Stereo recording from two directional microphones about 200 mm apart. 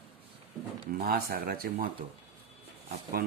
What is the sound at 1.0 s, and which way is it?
Speech, 50° right (ahead or behind).